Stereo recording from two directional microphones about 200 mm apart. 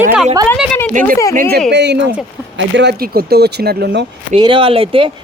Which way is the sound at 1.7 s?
60° right (ahead or behind).